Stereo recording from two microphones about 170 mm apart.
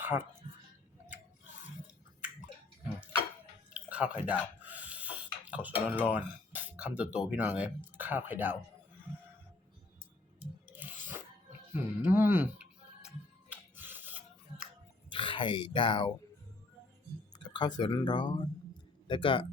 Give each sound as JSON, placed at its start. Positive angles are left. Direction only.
{"t": 0.0, "sound": "speech", "side_deg": -10}
{"t": 3.8, "sound": "speech", "side_deg": -10}
{"t": 10.4, "sound": "a sound", "side_deg": -10}
{"t": 11.7, "sound": "music", "side_deg": -15}
{"t": 15.1, "sound": "speech", "side_deg": 30}
{"t": 17.4, "sound": "speech", "side_deg": 25}